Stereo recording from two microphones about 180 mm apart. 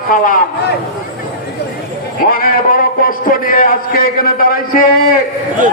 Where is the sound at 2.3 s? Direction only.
50° left (ahead or behind).